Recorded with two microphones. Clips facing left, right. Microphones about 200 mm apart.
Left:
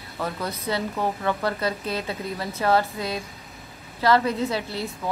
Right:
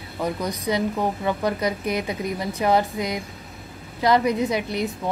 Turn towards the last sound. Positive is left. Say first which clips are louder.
# right 4 dB
turn(degrees=-20)  # may be behind; listen again after turning